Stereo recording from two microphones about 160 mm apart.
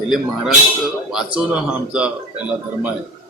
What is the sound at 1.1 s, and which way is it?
Speech, 5° right (ahead or behind).